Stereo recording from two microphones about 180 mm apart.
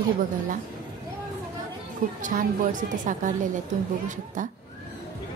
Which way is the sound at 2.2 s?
45° right (ahead or behind).